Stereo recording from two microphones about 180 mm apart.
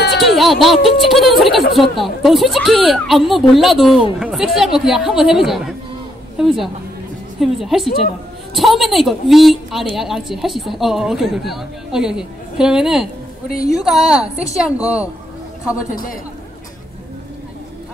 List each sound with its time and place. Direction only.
0.1 s speech: centre (ahead or behind)
15.9 s a man's voice: 50° left (ahead or behind)